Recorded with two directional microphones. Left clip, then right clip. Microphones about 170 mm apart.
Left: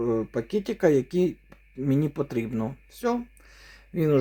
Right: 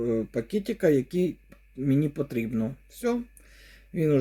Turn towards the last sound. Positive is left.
turn(degrees=-10)  # may be behind; listen again after turning